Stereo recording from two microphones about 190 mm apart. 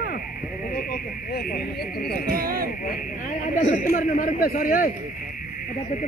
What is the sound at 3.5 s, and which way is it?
A man's voice, 40° left (ahead or behind).